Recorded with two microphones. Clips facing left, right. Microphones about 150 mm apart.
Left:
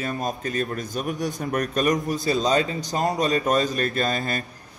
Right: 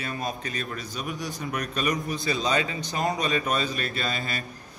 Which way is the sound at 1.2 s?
45° left (ahead or behind).